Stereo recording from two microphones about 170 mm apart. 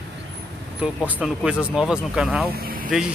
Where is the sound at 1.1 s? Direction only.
10° right (ahead or behind).